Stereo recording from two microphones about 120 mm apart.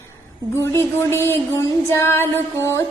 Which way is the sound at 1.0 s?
20° left (ahead or behind).